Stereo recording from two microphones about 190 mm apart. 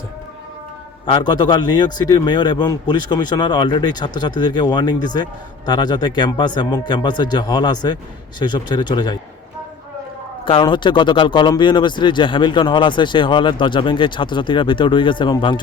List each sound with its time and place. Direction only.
1.0 s speech: 25° left (ahead or behind)
10.4 s speech: 25° left (ahead or behind)